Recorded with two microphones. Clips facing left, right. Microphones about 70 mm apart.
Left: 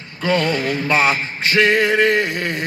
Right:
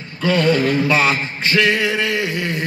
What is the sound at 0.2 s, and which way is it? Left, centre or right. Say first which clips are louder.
Speech: right 3 dB; left.